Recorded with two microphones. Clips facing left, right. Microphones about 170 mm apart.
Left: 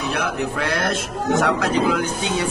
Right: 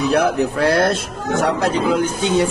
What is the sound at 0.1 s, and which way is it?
Speech, 40° right (ahead or behind).